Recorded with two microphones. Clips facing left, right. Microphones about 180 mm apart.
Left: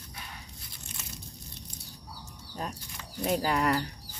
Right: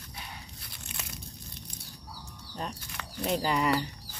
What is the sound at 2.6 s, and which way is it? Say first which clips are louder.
Speech: even; 5° left (ahead or behind).